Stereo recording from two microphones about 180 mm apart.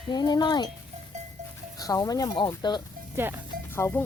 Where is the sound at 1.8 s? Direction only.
20° left (ahead or behind).